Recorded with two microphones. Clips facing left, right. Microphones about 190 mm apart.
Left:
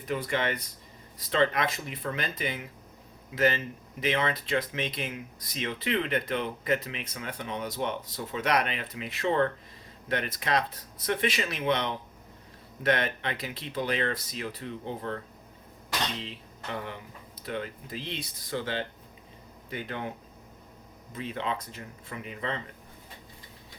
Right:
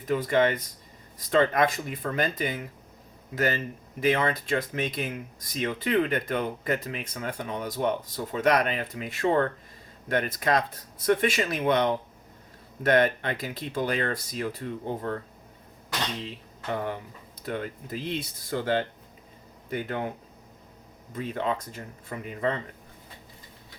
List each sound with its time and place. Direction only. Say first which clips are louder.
0.1 s speech: right 6 dB; 45° right (ahead or behind)
17.4 s speech: right 2 dB; 45° right (ahead or behind)